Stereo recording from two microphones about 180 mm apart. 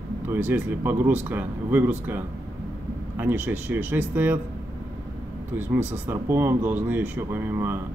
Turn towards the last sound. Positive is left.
turn(degrees=-10)  # may be behind; listen again after turning